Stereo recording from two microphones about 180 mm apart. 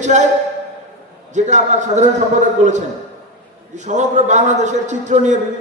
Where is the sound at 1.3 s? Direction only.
40° right (ahead or behind).